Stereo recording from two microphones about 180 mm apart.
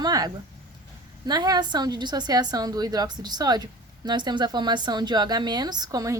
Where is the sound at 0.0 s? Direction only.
20° right (ahead or behind).